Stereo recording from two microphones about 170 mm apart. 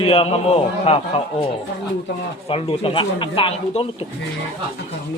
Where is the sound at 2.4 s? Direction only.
35° left (ahead or behind).